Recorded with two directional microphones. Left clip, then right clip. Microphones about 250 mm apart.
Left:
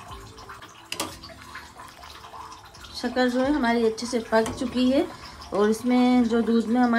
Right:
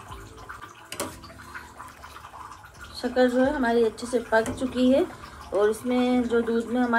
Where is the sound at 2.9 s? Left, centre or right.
Left.